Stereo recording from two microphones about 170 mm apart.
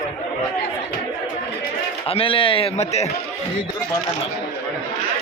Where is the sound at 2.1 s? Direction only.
35° left (ahead or behind).